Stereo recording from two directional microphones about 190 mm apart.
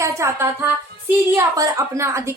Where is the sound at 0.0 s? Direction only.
15° right (ahead or behind).